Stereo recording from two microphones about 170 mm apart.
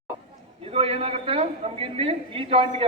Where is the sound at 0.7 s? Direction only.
35° right (ahead or behind).